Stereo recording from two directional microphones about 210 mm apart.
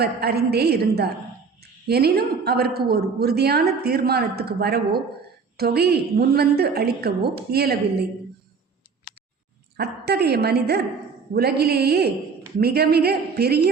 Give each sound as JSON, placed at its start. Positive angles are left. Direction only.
{"t": 0.0, "sound": "a woman's voice", "side_deg": -50}
{"t": 9.7, "sound": "a woman's voice", "side_deg": -50}